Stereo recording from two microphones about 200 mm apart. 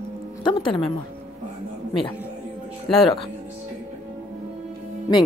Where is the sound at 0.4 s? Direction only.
25° left (ahead or behind).